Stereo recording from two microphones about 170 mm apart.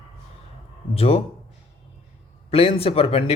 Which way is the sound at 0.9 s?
35° left (ahead or behind).